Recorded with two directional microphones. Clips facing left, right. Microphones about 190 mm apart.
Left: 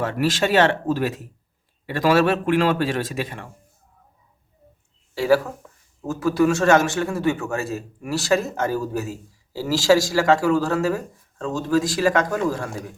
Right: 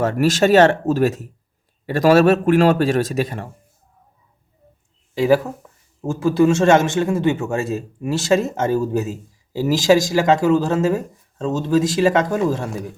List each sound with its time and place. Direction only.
0.0 s a man's voice: 45° right (ahead or behind)
5.1 s a man's voice: 20° right (ahead or behind)